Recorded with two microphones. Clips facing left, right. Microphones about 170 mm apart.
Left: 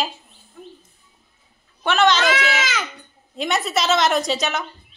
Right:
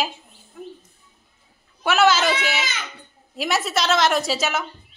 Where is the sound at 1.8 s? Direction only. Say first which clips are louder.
Even; 5° right (ahead or behind).